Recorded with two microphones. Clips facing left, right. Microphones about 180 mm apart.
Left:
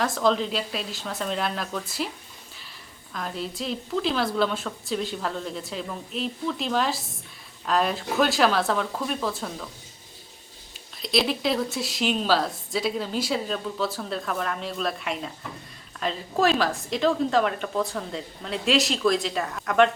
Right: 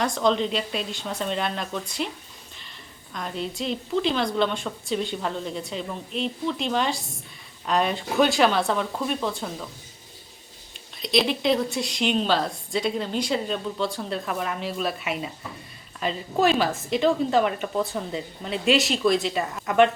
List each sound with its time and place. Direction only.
0.0 s a woman's voice: centre (ahead or behind)
3.1 s a woman's voice: centre (ahead or behind)
11.0 s a woman's voice: centre (ahead or behind)